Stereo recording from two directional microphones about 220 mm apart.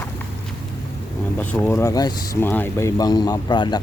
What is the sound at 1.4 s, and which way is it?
Speech, 5° left (ahead or behind).